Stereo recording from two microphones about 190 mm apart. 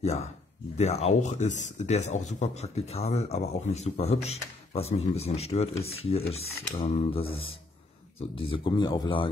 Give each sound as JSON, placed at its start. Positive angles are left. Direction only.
{"t": 0.0, "sound": "speech", "side_deg": 35}